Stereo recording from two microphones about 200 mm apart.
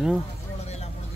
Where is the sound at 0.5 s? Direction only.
30° left (ahead or behind).